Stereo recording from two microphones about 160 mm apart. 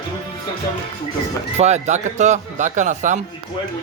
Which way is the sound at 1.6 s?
45° right (ahead or behind).